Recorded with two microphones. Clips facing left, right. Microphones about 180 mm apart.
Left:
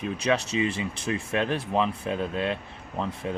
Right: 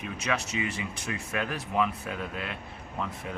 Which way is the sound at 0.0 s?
30° left (ahead or behind).